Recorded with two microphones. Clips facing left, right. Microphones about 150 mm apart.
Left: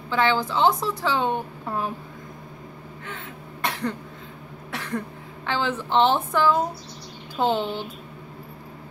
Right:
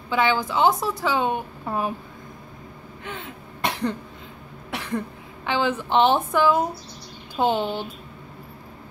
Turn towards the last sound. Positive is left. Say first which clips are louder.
# right 1 dB
turn(degrees=-15)  # may be behind; listen again after turning